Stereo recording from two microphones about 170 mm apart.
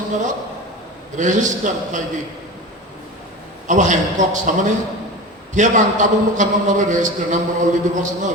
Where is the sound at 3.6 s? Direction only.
45° right (ahead or behind).